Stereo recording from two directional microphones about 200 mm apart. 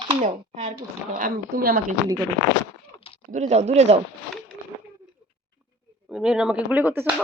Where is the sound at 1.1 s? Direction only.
45° right (ahead or behind).